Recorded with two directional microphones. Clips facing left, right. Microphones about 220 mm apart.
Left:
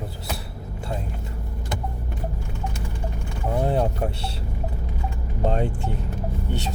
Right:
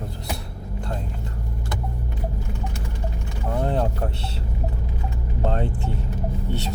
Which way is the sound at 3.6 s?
10° left (ahead or behind).